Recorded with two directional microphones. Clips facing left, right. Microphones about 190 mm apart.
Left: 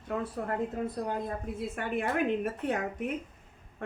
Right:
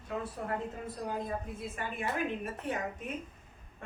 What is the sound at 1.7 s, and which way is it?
A woman's voice, 60° left (ahead or behind).